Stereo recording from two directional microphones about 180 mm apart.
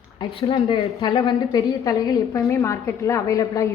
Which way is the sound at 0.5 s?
15° left (ahead or behind).